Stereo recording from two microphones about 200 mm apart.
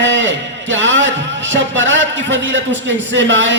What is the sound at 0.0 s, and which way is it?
A man's voice, 70° right (ahead or behind).